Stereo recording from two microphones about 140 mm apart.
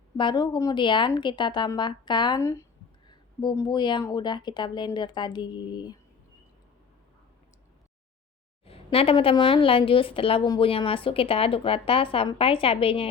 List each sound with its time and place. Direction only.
0.2 s speech: 35° left (ahead or behind)
2.4 s speech: 20° left (ahead or behind)
8.6 s a sound: 45° left (ahead or behind)
9.3 s speech: 40° left (ahead or behind)